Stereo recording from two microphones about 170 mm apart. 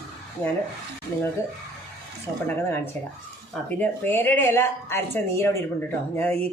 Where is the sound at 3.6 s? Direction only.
10° left (ahead or behind).